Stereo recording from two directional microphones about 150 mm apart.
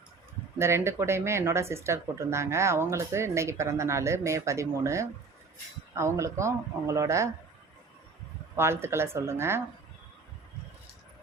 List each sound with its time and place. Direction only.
0.6 s speech: 15° right (ahead or behind)
8.5 s speech: 15° right (ahead or behind)